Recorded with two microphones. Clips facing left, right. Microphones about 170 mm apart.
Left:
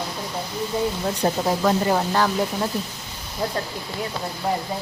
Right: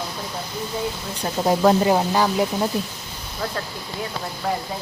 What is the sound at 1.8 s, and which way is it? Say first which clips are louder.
Speech: right 2 dB; 15° right (ahead or behind).